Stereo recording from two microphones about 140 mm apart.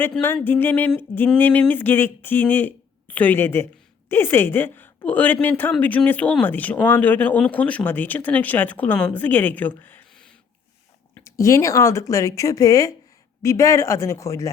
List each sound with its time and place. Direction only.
0.4 s speech: 15° left (ahead or behind)
11.2 s speech: 20° left (ahead or behind)